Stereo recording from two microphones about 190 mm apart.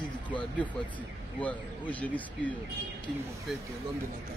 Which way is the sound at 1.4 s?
10° left (ahead or behind).